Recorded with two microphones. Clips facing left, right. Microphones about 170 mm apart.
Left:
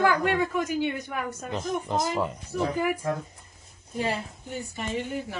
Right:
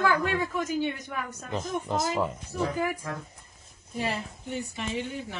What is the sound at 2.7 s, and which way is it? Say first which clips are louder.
Speech: left 3 dB; 10° left (ahead or behind).